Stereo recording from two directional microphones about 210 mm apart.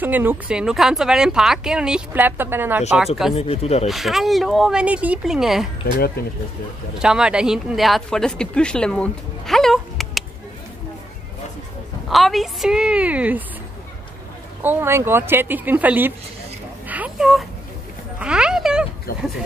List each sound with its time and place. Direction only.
0.0 s speech: 10° right (ahead or behind)
3.3 s speech: 30° left (ahead or behind)
3.8 s speech: centre (ahead or behind)
5.9 s speech: 50° left (ahead or behind)
7.0 s speech: 5° right (ahead or behind)
12.1 s speech: centre (ahead or behind)
14.6 s a woman's voice: 10° right (ahead or behind)
16.8 s a sound: 5° right (ahead or behind)